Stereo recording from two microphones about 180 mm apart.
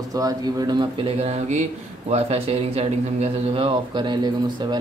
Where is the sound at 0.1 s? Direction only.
20° right (ahead or behind).